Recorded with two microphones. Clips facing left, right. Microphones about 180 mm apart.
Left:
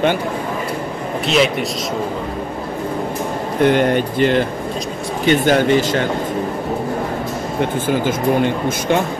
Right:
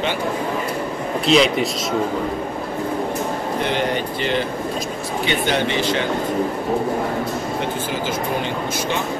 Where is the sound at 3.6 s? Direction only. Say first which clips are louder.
Left 10 dB; 50° left (ahead or behind).